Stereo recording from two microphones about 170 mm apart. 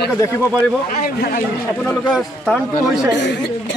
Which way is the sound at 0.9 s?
60° left (ahead or behind).